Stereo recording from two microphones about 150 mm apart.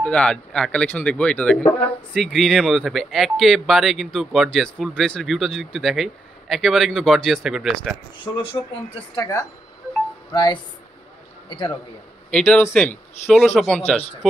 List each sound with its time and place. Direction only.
0.0 s speech: 5° left (ahead or behind)
9.1 s a man's voice: 20° left (ahead or behind)
12.3 s a man's voice: 5° left (ahead or behind)
13.2 s speech: 45° left (ahead or behind)
13.6 s speech: centre (ahead or behind)